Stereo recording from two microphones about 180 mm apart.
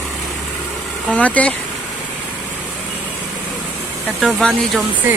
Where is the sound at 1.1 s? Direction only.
10° left (ahead or behind).